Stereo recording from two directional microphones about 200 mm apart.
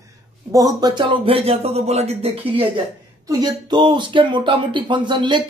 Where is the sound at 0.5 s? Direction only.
20° right (ahead or behind).